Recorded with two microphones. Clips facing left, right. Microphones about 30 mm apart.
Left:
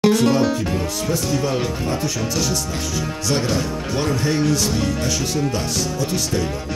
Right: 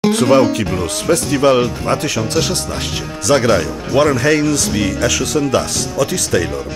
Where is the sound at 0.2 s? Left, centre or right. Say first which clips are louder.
Right 6 dB; right.